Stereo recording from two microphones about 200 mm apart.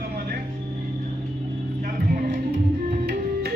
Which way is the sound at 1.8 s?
45° right (ahead or behind).